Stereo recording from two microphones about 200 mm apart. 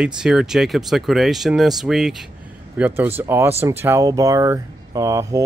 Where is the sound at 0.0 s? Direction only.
5° right (ahead or behind).